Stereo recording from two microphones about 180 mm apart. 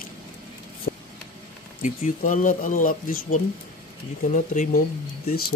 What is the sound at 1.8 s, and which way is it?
Speech, 45° left (ahead or behind).